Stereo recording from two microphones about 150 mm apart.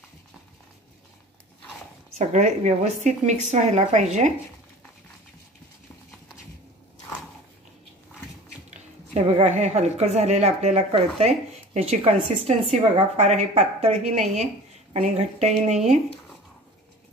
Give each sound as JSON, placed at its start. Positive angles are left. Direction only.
{"t": 2.1, "sound": "a woman's voice", "side_deg": -50}
{"t": 9.1, "sound": "a woman's voice", "side_deg": -50}
{"t": 14.2, "sound": "a woman's voice", "side_deg": 0}
{"t": 14.9, "sound": "a woman's voice", "side_deg": -45}